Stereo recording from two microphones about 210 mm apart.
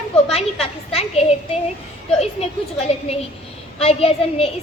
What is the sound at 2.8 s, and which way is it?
A woman's voice, 30° left (ahead or behind).